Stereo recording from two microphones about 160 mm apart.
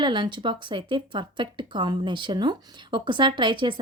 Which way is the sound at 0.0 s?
30° right (ahead or behind).